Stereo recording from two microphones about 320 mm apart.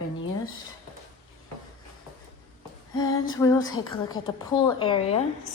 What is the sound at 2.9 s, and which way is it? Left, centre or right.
Female singing, centre.